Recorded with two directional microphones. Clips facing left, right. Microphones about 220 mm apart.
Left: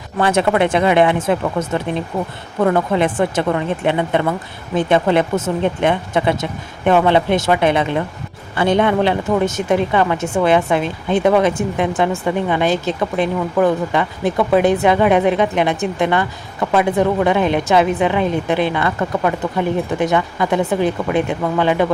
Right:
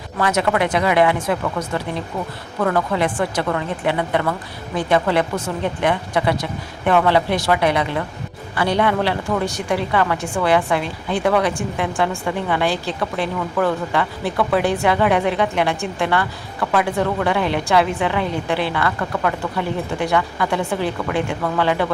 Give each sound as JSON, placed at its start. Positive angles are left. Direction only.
{"t": 0.2, "sound": "a woman's voice", "side_deg": 30}